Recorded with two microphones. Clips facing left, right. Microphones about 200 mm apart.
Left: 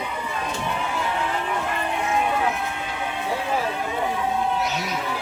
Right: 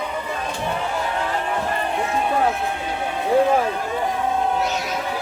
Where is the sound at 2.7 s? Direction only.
35° right (ahead or behind).